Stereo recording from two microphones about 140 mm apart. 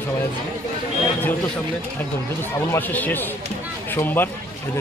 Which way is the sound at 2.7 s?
15° left (ahead or behind).